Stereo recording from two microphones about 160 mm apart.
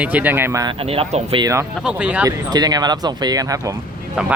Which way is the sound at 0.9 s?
35° right (ahead or behind).